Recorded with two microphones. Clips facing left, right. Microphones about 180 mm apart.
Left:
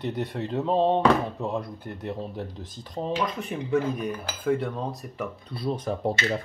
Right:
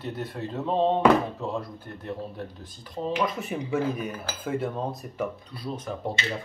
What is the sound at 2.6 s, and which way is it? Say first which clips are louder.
Dishes: right 1 dB; 5° right (ahead or behind).